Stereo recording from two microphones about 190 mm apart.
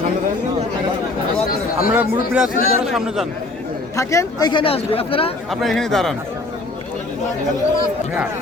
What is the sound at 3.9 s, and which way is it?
Speech, 15° left (ahead or behind).